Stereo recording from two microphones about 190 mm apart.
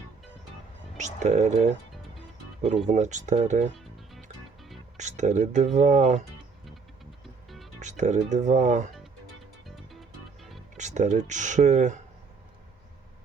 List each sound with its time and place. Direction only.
0.9 s speech: 40° right (ahead or behind)
2.8 s speech: 40° right (ahead or behind)
4.9 s speech: 40° right (ahead or behind)
7.8 s speech: 40° right (ahead or behind)
9.6 s music: centre (ahead or behind)
10.8 s speech: 40° right (ahead or behind)